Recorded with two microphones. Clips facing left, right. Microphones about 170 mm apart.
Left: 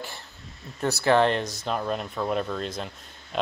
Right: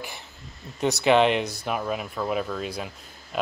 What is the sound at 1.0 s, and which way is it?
Speech, 15° right (ahead or behind).